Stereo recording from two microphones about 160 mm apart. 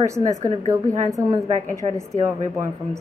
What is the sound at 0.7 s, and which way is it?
A woman's voice, 20° right (ahead or behind).